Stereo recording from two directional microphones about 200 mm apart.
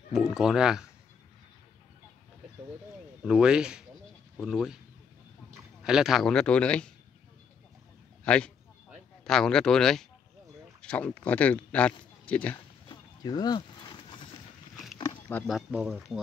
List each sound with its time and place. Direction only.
0.1 s speech: centre (ahead or behind)
3.3 s speech: 5° right (ahead or behind)
5.9 s speech: centre (ahead or behind)
8.2 s a sound: 5° left (ahead or behind)
9.2 s speech: 5° left (ahead or behind)
12.8 s a sound: 20° left (ahead or behind)
15.0 s wild animals: 15° left (ahead or behind)
15.4 s speech: 5° right (ahead or behind)